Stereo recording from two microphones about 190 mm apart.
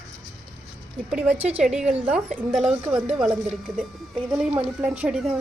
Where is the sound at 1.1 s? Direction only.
5° right (ahead or behind).